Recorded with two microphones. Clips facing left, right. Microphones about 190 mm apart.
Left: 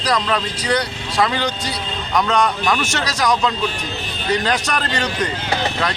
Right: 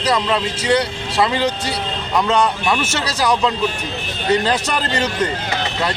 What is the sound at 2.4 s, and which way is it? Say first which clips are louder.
Speech: even; 5° right (ahead or behind).